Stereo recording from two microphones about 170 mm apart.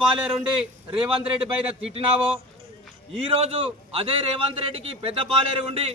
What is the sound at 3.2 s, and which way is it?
A man's voice, 35° right (ahead or behind).